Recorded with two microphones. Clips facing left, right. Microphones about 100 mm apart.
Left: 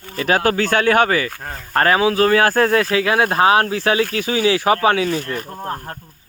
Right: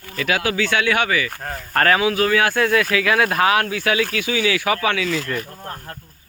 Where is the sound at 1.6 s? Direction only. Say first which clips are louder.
Left 2 dB; 25° left (ahead or behind); by 6.0 s 45° left (ahead or behind).